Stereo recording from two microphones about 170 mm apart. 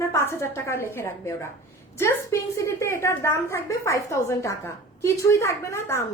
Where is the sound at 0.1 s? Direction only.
15° left (ahead or behind).